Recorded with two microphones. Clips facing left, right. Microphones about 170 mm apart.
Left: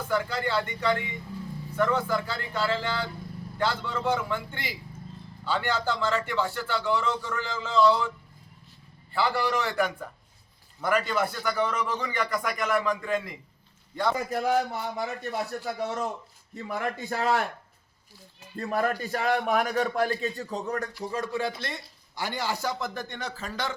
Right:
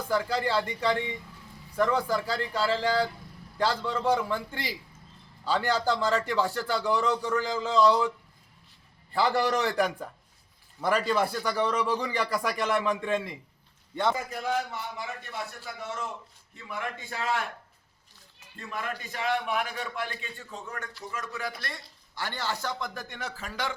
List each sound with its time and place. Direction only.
0.1 s a man's voice: 35° right (ahead or behind)
9.1 s a man's voice: 40° right (ahead or behind); by 14.2 s 20° right (ahead or behind)
14.4 s a man's voice: 40° left (ahead or behind)
18.5 s a man's voice: 40° left (ahead or behind); by 23.7 s 10° right (ahead or behind)